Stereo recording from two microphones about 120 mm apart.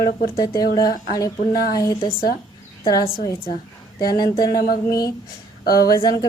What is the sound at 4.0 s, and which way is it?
Speech, 35° left (ahead or behind).